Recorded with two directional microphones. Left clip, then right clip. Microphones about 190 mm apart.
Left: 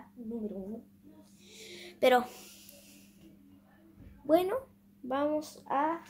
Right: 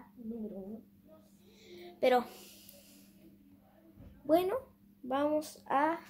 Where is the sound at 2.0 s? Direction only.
10° left (ahead or behind).